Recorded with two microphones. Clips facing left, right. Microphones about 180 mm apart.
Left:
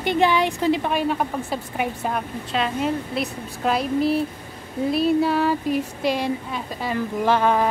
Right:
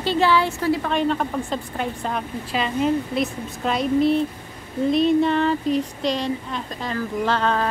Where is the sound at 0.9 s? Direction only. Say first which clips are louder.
Right 1 dB; 10° left (ahead or behind).